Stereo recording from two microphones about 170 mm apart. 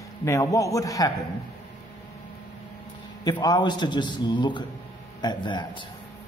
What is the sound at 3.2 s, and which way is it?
Speech, 25° left (ahead or behind).